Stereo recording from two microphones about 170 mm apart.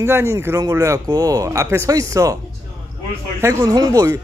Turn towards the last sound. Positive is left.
turn(degrees=-20)  # may be behind; listen again after turning